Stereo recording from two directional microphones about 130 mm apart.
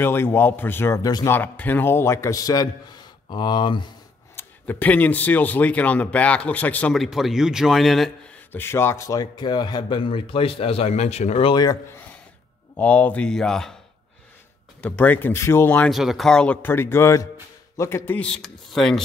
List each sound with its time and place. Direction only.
0.0 s speech: 15° left (ahead or behind)
1.3 s a man's voice: 15° left (ahead or behind); by 3.9 s 35° left (ahead or behind)
4.4 s speech: 15° left (ahead or behind)
6.9 s a man's voice: centre (ahead or behind)
8.5 s a man's voice: 20° left (ahead or behind); by 11.5 s 55° left (ahead or behind)
11.5 s a man's voice: 30° left (ahead or behind)
12.7 s speech: 10° left (ahead or behind)
14.8 s speech: 10° left (ahead or behind)
15.9 s speech: centre (ahead or behind)